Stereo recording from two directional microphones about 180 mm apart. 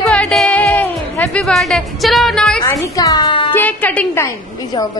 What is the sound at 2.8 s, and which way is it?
Speech, 20° left (ahead or behind).